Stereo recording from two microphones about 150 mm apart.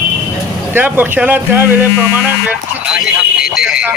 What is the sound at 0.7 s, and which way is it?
Speech, 15° right (ahead or behind).